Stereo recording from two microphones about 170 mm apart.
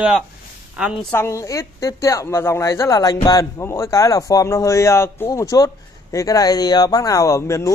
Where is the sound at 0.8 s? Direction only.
5° right (ahead or behind).